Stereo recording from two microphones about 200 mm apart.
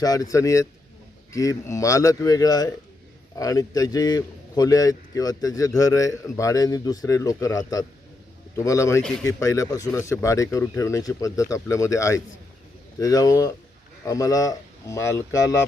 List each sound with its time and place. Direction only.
0.0 s a man's voice: 20° left (ahead or behind)